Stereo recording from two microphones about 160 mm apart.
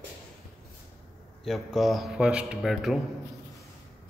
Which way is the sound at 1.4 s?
Centre (ahead or behind).